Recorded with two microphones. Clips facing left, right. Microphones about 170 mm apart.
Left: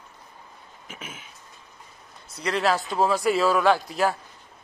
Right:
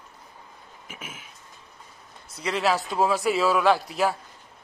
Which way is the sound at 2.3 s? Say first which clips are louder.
Left 1 dB; centre (ahead or behind).